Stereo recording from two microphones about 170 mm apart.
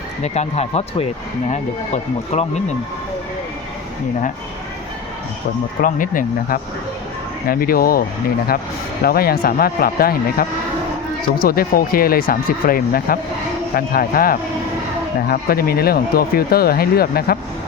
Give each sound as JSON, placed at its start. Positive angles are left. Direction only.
{"t": 0.2, "sound": "speech", "side_deg": 40}
{"t": 5.8, "sound": "speech", "side_deg": 55}
{"t": 9.0, "sound": "speech", "side_deg": 60}